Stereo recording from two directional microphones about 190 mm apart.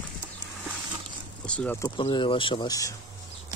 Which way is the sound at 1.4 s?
5° left (ahead or behind).